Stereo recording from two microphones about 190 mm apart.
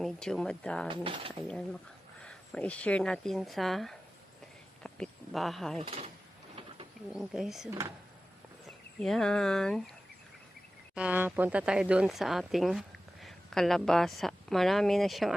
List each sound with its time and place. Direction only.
0.0 s speech: 5° left (ahead or behind)
0.9 s speech: 25° right (ahead or behind)
2.2 s speech: 5° left (ahead or behind)
5.8 s speech: 35° right (ahead or behind)
7.1 s speech: centre (ahead or behind)
7.7 s speech: 15° right (ahead or behind)
9.0 s speech: centre (ahead or behind)
10.9 s speech: 5° right (ahead or behind)